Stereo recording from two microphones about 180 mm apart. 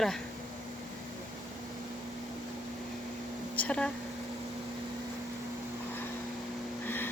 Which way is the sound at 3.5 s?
5° left (ahead or behind).